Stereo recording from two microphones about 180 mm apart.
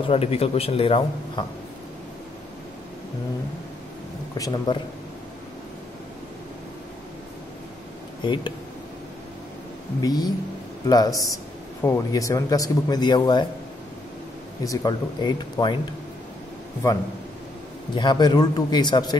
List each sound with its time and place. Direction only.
0.1 s speech: 35° left (ahead or behind)
4.4 s speech: 25° left (ahead or behind)
8.2 s speech: 25° left (ahead or behind)
10.0 s speech: 20° left (ahead or behind)
14.6 s speech: 20° left (ahead or behind)
17.9 s speech: 25° left (ahead or behind)